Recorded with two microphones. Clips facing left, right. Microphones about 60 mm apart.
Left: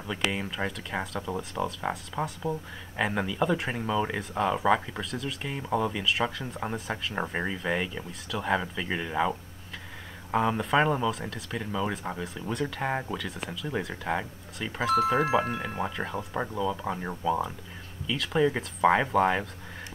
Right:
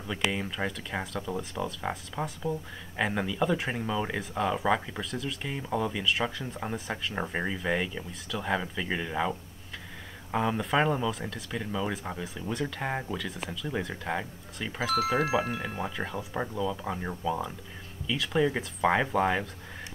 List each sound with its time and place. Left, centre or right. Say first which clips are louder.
0.0 s speech: even; centre
15.0 s speech: left 2 dB; left
16.0 s speech: left 1 dB; centre